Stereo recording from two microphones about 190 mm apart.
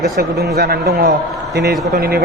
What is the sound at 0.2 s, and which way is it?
A man's voice, 55° right (ahead or behind).